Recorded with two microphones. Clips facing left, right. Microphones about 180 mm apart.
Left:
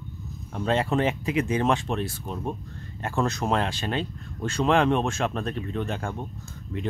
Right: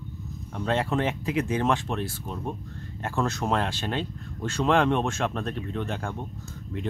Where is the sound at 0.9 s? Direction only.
15° left (ahead or behind).